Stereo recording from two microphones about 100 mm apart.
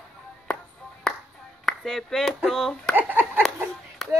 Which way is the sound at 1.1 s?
5° left (ahead or behind).